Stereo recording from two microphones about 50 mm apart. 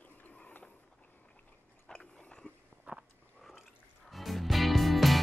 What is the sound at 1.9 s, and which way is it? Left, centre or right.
Dog, centre.